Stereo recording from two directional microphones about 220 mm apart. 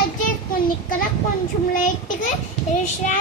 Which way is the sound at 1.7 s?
35° left (ahead or behind).